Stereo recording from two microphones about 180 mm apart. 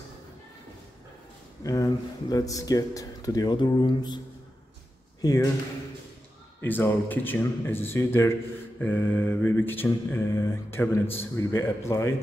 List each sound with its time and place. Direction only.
1.6 s speech: 20° left (ahead or behind)
5.2 s speech: 20° left (ahead or behind)
6.6 s speech: 10° left (ahead or behind)